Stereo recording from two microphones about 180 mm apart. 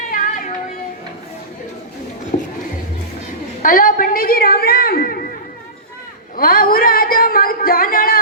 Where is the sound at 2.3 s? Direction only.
50° left (ahead or behind).